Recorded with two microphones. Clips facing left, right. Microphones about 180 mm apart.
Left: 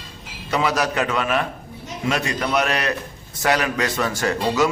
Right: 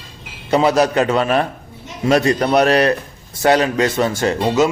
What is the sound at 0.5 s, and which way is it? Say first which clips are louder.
A man's voice: right 7 dB; 30° right (ahead or behind).